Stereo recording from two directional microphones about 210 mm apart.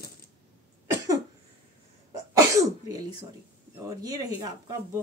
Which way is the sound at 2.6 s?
15° right (ahead or behind).